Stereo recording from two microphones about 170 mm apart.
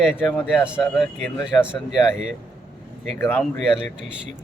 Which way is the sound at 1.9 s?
Centre (ahead or behind).